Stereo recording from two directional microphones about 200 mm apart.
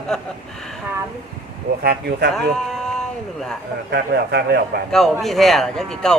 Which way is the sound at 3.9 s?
55° right (ahead or behind).